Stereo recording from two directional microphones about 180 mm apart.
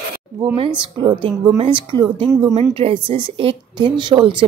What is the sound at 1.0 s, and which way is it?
Speech, 25° right (ahead or behind).